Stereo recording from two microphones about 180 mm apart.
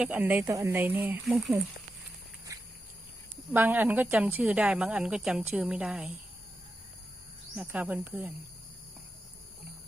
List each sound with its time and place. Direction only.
0.0 s a woman's voice: 10° right (ahead or behind)
2.5 s a sound: 20° right (ahead or behind)
3.5 s a woman's voice: 10° right (ahead or behind)
7.5 s a woman's voice: 5° right (ahead or behind)